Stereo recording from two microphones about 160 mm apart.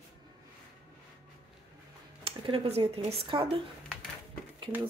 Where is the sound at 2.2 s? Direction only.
35° right (ahead or behind).